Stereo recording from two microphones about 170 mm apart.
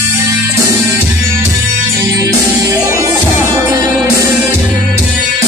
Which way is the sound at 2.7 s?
20° right (ahead or behind).